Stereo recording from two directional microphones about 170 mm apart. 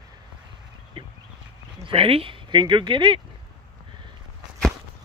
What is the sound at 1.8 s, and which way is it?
Speech, 35° right (ahead or behind).